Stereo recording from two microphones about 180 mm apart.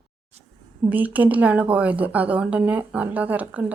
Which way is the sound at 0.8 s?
10° right (ahead or behind).